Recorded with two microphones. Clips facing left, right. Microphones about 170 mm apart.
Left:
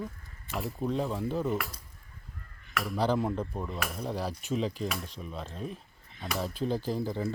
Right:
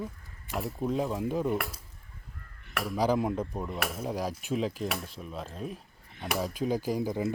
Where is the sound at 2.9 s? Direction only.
10° right (ahead or behind).